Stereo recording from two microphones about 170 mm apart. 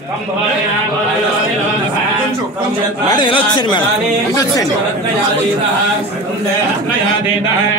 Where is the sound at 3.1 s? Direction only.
30° left (ahead or behind).